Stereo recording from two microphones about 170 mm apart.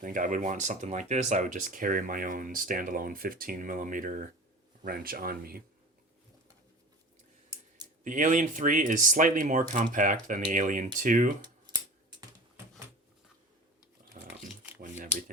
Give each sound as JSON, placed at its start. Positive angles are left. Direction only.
{"t": 0.0, "sound": "speech", "side_deg": -50}
{"t": 8.0, "sound": "speech", "side_deg": -50}
{"t": 14.2, "sound": "roaring cats", "side_deg": -45}
{"t": 14.8, "sound": "a sound", "side_deg": -50}